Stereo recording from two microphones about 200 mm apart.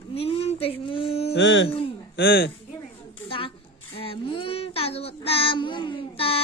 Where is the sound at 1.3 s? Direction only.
65° left (ahead or behind).